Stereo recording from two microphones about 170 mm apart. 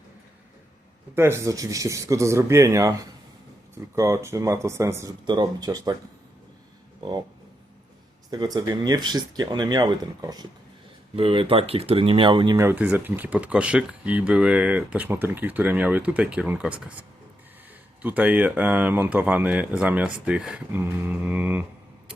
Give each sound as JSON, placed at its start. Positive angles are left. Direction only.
{"t": 1.1, "sound": "speech", "side_deg": -15}
{"t": 8.3, "sound": "speech", "side_deg": -25}
{"t": 12.5, "sound": "speech", "side_deg": -10}